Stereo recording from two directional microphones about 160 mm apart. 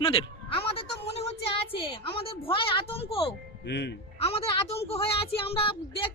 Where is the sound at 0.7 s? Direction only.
40° left (ahead or behind).